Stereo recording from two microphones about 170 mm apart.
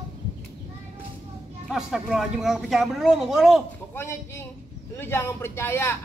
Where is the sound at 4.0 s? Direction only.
15° left (ahead or behind).